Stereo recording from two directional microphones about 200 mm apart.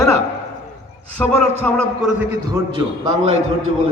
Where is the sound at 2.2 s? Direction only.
15° right (ahead or behind).